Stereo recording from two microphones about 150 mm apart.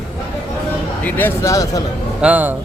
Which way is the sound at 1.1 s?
10° left (ahead or behind).